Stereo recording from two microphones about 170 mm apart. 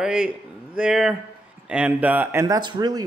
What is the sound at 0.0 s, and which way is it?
Speech, 5° right (ahead or behind).